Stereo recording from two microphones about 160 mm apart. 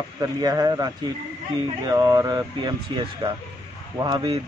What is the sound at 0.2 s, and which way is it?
A man's voice, 25° right (ahead or behind).